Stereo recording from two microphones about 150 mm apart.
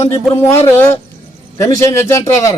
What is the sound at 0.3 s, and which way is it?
A man's voice, 15° left (ahead or behind).